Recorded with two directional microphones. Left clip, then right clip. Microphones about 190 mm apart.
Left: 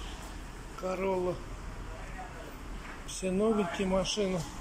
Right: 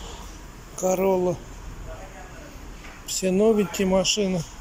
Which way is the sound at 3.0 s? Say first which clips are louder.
Right 10 dB; 20° right (ahead or behind).